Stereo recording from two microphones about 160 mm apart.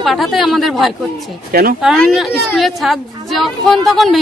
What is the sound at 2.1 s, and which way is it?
Speech, centre (ahead or behind).